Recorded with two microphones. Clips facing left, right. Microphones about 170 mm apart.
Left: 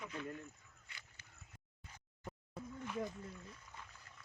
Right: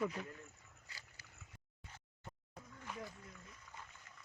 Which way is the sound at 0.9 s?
35° right (ahead or behind).